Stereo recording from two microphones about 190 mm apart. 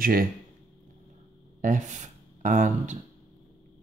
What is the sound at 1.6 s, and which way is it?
Speech, 40° right (ahead or behind).